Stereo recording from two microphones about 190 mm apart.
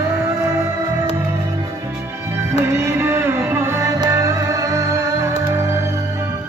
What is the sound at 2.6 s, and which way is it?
Music, 15° right (ahead or behind).